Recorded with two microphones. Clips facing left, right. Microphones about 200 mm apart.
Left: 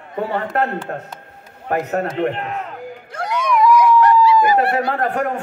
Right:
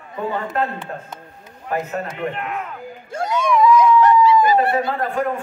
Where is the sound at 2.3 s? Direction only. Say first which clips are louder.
Left 2 dB; 35° left (ahead or behind).